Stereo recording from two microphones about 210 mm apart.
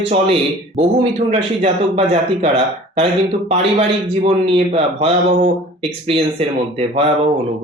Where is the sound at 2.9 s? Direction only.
30° right (ahead or behind).